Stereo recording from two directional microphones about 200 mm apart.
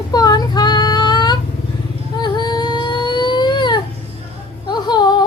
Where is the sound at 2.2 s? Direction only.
20° left (ahead or behind).